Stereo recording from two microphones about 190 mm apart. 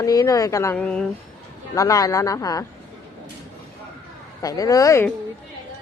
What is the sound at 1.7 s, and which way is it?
Speech, 20° left (ahead or behind).